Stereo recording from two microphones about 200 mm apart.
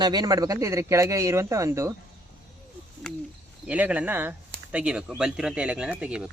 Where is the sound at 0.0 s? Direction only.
20° right (ahead or behind).